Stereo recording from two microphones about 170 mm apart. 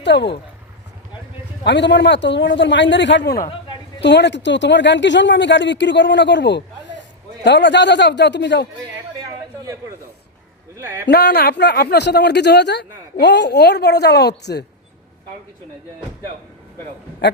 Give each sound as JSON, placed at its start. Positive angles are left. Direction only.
{"t": 0.0, "sound": "speech", "side_deg": 90}
{"t": 1.6, "sound": "speech", "side_deg": 90}
{"t": 10.8, "sound": "speech", "side_deg": -15}
{"t": 11.0, "sound": "speech", "side_deg": 75}